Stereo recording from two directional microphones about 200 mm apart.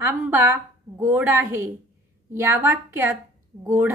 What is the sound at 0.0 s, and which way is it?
A woman's voice, 15° right (ahead or behind).